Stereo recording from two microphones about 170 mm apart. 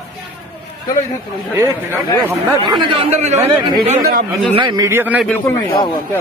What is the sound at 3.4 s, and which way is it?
Speech, 25° right (ahead or behind).